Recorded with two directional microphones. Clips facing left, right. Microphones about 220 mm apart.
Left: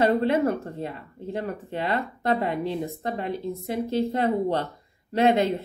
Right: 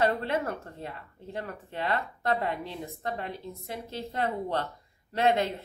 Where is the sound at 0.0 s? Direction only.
20° left (ahead or behind).